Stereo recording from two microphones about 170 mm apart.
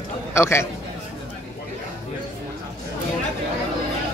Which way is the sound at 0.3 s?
15° left (ahead or behind).